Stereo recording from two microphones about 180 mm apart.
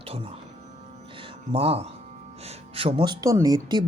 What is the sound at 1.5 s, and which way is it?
Speech, 30° right (ahead or behind).